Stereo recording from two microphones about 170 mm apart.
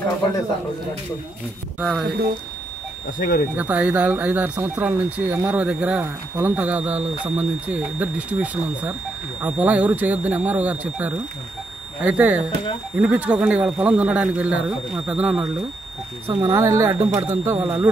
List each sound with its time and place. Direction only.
1.8 s speech: centre (ahead or behind)
3.2 s speech: 60° left (ahead or behind)
3.5 s speech: 10° right (ahead or behind)